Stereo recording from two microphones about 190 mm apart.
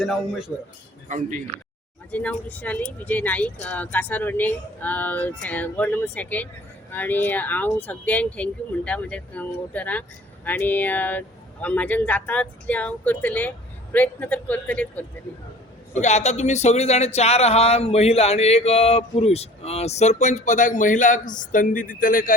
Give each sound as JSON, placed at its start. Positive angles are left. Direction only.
{"t": 0.0, "sound": "a man's voice", "side_deg": 0}
{"t": 1.0, "sound": "speech", "side_deg": -40}
{"t": 2.0, "sound": "speech", "side_deg": 10}
{"t": 15.9, "sound": "speech", "side_deg": 40}